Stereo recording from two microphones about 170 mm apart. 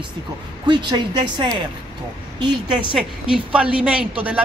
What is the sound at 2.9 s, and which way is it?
A woman's voice, 5° right (ahead or behind).